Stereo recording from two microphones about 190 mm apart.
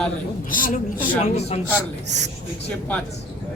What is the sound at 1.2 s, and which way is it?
Speech, 35° left (ahead or behind).